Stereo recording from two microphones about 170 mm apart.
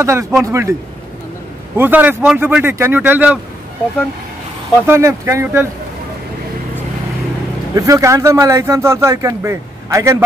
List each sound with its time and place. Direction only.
0.0 s speech: 15° right (ahead or behind)
1.8 s speech: 10° right (ahead or behind)
4.8 s speech: 15° right (ahead or behind)
7.7 s speech: 20° right (ahead or behind)